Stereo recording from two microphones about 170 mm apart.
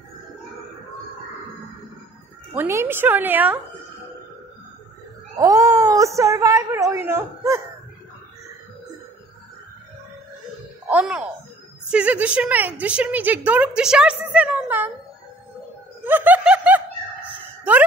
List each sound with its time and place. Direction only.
2.5 s a woman's voice: 15° right (ahead or behind)
5.4 s a woman's voice: 20° right (ahead or behind)
10.9 s a woman's voice: 5° right (ahead or behind)
16.0 s snicker: 10° right (ahead or behind)
17.4 s a sound: 10° right (ahead or behind)